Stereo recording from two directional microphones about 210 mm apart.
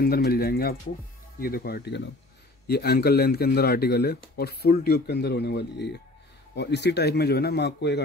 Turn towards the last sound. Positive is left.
turn(degrees=55)  # may be behind; listen again after turning